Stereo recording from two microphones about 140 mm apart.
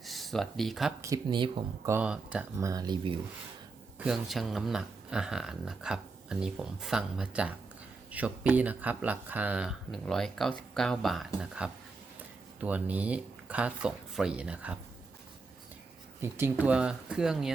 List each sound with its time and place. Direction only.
0.0 s speech: centre (ahead or behind)
1.0 s speech: 30° right (ahead or behind)
1.9 s speech: 10° right (ahead or behind)
2.6 s speech: 25° right (ahead or behind)
3.9 s speech: 5° right (ahead or behind)
16.2 s speech: 15° right (ahead or behind)